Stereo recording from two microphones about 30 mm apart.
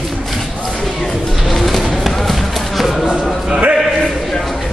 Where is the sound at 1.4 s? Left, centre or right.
Centre.